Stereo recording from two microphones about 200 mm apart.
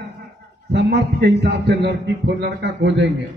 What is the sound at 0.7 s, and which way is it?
A man's voice, 55° right (ahead or behind).